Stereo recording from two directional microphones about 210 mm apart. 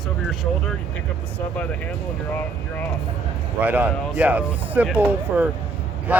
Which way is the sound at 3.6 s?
5° right (ahead or behind).